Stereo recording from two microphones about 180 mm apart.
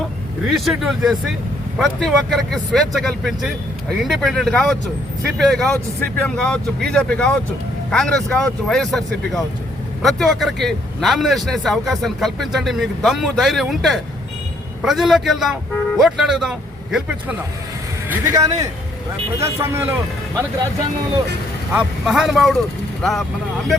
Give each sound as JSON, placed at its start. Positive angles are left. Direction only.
{"t": 0.4, "sound": "speech", "side_deg": 0}
{"t": 18.1, "sound": "a man's voice", "side_deg": -15}
{"t": 21.7, "sound": "speech", "side_deg": -5}